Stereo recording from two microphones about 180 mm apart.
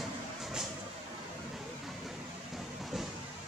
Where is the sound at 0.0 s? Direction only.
Centre (ahead or behind).